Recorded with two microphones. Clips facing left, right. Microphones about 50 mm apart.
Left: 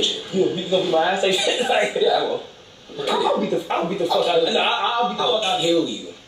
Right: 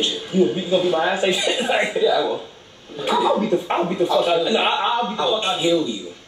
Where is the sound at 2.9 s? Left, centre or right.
Right.